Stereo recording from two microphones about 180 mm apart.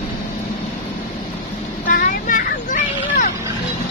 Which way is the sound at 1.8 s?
50° left (ahead or behind).